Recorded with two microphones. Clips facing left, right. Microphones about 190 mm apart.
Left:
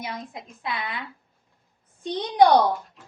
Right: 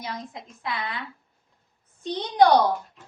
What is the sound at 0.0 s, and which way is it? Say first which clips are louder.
Speech: left 1 dB; 20° left (ahead or behind).